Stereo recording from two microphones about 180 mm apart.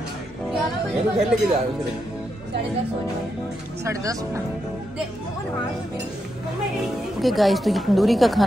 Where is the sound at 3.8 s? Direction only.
15° right (ahead or behind).